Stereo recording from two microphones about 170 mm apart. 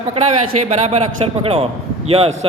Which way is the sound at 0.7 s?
40° right (ahead or behind).